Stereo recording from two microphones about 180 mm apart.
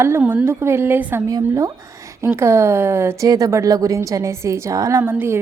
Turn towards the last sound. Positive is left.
turn(degrees=-15)  # may be behind; listen again after turning